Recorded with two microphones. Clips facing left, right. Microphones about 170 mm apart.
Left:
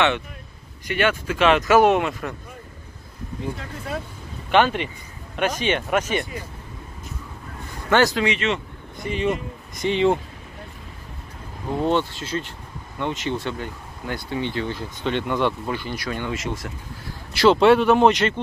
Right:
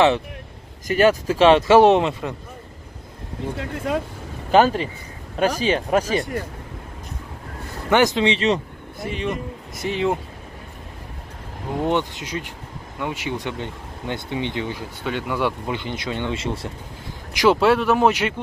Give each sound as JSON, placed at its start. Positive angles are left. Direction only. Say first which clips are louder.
{"t": 0.8, "sound": "speech", "louder": "right 5 dB", "side_deg": -40}
{"t": 3.5, "sound": "speech", "louder": "right 6 dB", "side_deg": -75}
{"t": 4.5, "sound": "speech", "louder": "right 3 dB", "side_deg": -35}
{"t": 7.9, "sound": "speech", "louder": "right 1 dB", "side_deg": -20}
{"t": 9.0, "sound": "speech", "louder": "left 2 dB", "side_deg": 0}
{"t": 11.8, "sound": "speech", "louder": "even", "side_deg": -15}
{"t": 15.7, "sound": "speech", "louder": "right 1 dB", "side_deg": -20}
{"t": 17.3, "sound": "speech", "louder": "left 1 dB", "side_deg": -15}
{"t": 17.6, "sound": "speech", "louder": "left 2 dB", "side_deg": 0}